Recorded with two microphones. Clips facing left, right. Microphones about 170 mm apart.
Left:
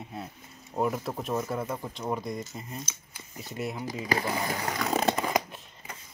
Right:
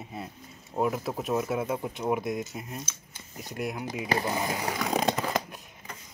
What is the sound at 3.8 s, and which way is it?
Speech, 20° right (ahead or behind).